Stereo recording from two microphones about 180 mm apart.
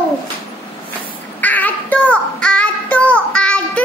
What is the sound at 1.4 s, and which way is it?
Child singing, 10° left (ahead or behind).